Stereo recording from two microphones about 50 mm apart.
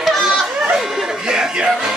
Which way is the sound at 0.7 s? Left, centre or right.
Centre.